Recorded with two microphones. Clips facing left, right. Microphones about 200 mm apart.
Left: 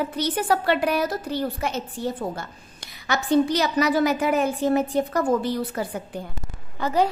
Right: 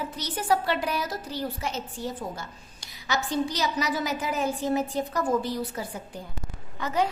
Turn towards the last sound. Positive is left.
turn(degrees=35)  # may be behind; listen again after turning